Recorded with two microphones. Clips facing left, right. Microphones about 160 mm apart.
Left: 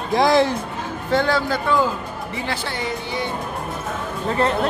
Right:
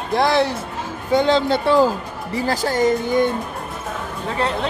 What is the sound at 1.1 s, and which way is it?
Speech, 20° right (ahead or behind).